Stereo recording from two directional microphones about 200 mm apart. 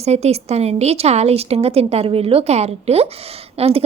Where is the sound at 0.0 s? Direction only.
30° right (ahead or behind).